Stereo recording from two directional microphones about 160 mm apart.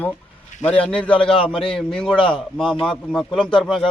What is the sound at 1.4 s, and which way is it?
Speech, 35° left (ahead or behind).